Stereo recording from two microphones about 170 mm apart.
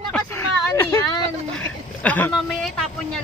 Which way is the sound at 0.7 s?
15° left (ahead or behind).